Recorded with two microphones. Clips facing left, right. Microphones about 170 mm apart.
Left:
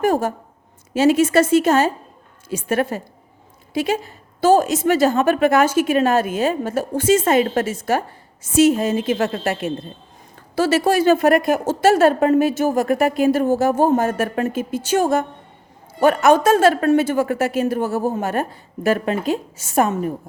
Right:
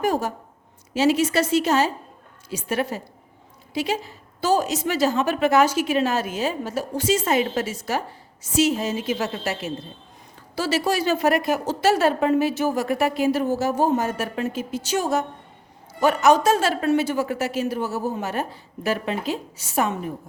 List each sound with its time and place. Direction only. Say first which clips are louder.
0.0 s a woman's voice: left 5 dB; 50° left (ahead or behind)